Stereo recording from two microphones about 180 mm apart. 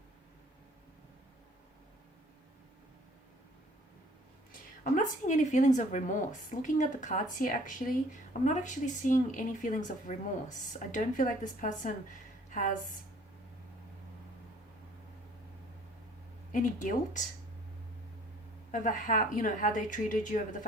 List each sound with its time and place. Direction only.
4.8 s a woman's voice: 45° left (ahead or behind)
16.5 s a woman's voice: 45° left (ahead or behind)
18.7 s a woman's voice: 45° left (ahead or behind)